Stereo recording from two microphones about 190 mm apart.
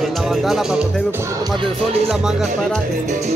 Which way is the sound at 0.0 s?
Centre (ahead or behind).